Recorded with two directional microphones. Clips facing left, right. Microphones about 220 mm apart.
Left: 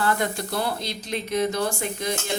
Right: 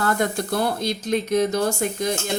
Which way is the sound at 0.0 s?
45° right (ahead or behind).